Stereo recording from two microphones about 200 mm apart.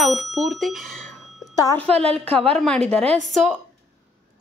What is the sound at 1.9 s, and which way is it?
Speech, 30° right (ahead or behind).